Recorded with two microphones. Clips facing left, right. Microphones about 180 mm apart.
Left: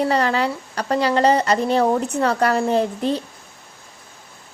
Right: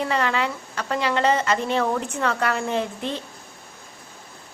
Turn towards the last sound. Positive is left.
turn(degrees=35)  # may be behind; listen again after turning